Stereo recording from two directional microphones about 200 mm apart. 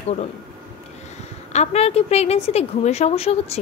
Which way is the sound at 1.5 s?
30° left (ahead or behind).